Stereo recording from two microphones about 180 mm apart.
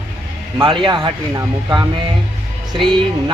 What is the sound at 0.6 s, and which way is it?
Speech, 25° right (ahead or behind).